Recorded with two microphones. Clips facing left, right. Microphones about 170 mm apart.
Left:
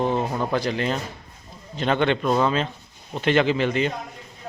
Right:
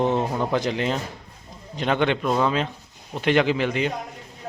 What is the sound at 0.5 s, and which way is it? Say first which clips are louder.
A man's voice: even; 15° right (ahead or behind).